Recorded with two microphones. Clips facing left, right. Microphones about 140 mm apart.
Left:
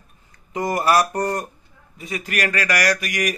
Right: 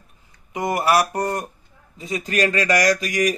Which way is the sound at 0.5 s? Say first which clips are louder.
Even; 20° right (ahead or behind).